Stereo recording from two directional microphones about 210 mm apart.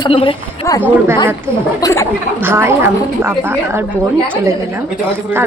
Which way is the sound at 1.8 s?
15° left (ahead or behind).